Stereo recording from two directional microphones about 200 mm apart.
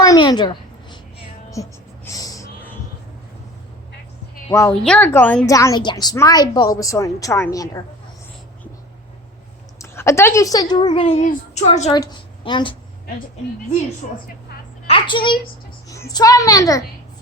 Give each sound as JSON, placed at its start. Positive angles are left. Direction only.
{"t": 0.0, "sound": "a sound", "side_deg": 20}
{"t": 1.6, "sound": "a woman's voice", "side_deg": 15}
{"t": 2.0, "sound": "gasp", "side_deg": 15}
{"t": 4.4, "sound": "a woman's voice", "side_deg": 15}
{"t": 4.7, "sound": "a woman's voice", "side_deg": 5}
{"t": 9.7, "sound": "a woman's voice", "side_deg": 15}
{"t": 12.5, "sound": "a woman's voice", "side_deg": 25}
{"t": 14.8, "sound": "a sound", "side_deg": 25}
{"t": 15.9, "sound": "a woman's voice", "side_deg": 15}